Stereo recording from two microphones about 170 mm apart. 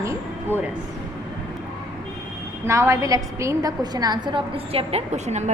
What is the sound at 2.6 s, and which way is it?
A woman's voice, 15° right (ahead or behind).